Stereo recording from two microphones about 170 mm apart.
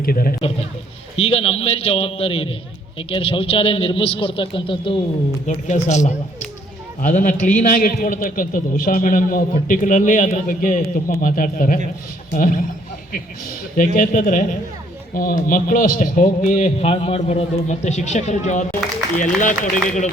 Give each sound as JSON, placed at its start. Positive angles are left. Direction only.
{"t": 0.0, "sound": "speech", "side_deg": 60}
{"t": 1.1, "sound": "a man's voice", "side_deg": 35}
{"t": 5.5, "sound": "a man's voice", "side_deg": 45}
{"t": 13.7, "sound": "a man's voice", "side_deg": 55}